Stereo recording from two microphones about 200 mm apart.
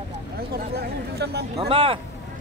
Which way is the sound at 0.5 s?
55° right (ahead or behind).